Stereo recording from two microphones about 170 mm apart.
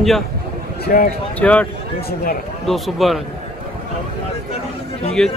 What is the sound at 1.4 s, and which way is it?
A man's voice, 10° left (ahead or behind).